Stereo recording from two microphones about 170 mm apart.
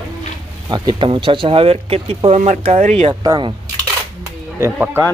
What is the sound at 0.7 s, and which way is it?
Speech, 30° right (ahead or behind).